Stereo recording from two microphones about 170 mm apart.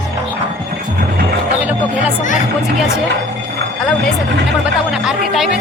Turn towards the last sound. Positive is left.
turn(degrees=0)  # may be behind; listen again after turning